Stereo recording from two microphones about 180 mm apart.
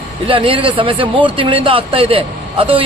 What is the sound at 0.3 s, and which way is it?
Speech, 30° right (ahead or behind).